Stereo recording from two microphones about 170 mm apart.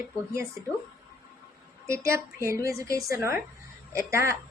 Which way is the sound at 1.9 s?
60° left (ahead or behind).